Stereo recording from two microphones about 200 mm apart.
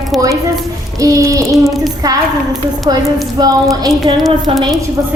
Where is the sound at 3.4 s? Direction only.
20° right (ahead or behind).